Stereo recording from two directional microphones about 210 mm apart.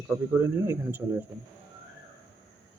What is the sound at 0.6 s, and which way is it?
Speech, 10° right (ahead or behind).